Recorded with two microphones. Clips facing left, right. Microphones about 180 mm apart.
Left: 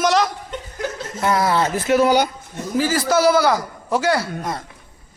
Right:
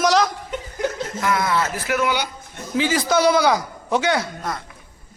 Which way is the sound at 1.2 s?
35° left (ahead or behind).